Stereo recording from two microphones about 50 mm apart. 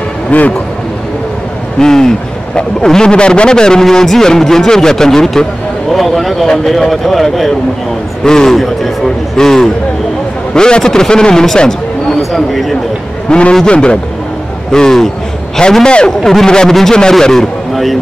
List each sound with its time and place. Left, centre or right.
0.3 s a man's voice: left
1.8 s a man's voice: centre
12.2 s speech: centre
13.3 s a man's voice: centre